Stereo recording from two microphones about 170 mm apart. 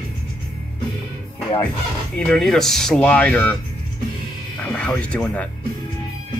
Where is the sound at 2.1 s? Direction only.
5° left (ahead or behind).